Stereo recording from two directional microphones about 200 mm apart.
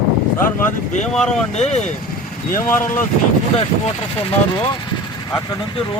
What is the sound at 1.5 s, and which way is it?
Speech, 35° left (ahead or behind).